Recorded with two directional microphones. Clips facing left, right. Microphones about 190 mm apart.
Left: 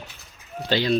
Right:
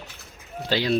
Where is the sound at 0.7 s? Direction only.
5° right (ahead or behind).